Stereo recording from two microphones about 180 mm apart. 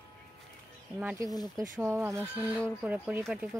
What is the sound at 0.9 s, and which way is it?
Speech, 10° right (ahead or behind).